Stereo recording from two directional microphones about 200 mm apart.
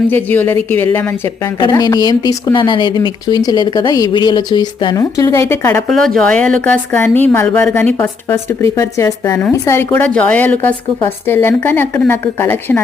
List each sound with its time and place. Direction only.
0.1 s a woman's voice: 10° left (ahead or behind)
1.5 s speech: 20° left (ahead or behind)
5.9 s a woman's voice: 5° left (ahead or behind)